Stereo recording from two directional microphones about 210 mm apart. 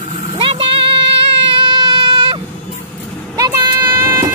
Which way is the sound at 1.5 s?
20° right (ahead or behind).